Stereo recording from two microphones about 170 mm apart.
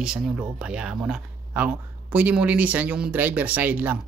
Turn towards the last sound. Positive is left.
turn(degrees=-10)  # may be behind; listen again after turning